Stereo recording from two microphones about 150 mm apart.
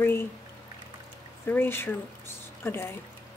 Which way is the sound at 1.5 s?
15° left (ahead or behind).